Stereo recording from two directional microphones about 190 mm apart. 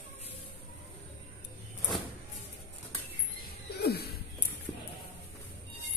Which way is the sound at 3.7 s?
55° left (ahead or behind).